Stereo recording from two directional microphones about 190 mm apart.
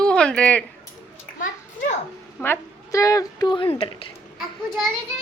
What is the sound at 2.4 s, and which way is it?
A woman's voice, 15° left (ahead or behind).